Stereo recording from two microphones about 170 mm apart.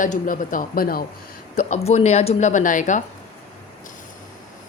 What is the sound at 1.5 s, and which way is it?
Speech, 40° left (ahead or behind).